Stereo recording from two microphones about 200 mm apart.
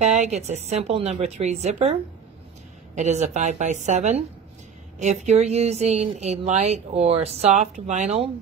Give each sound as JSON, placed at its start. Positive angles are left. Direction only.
{"t": 0.0, "sound": "speech", "side_deg": -35}
{"t": 3.0, "sound": "speech", "side_deg": -35}